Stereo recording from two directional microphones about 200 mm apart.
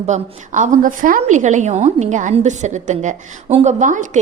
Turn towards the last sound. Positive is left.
turn(degrees=-40)  # may be behind; listen again after turning